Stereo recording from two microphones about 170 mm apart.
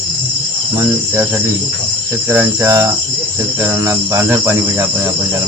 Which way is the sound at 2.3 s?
15° right (ahead or behind).